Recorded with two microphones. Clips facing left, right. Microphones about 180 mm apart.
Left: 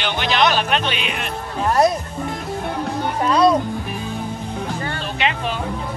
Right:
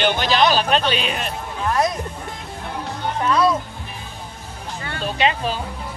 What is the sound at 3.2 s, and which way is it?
Speech, 35° left (ahead or behind).